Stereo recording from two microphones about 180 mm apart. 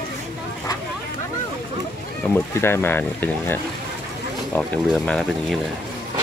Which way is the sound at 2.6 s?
15° left (ahead or behind).